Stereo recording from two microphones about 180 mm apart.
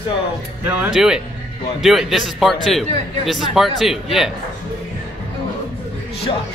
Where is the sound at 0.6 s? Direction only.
5° right (ahead or behind).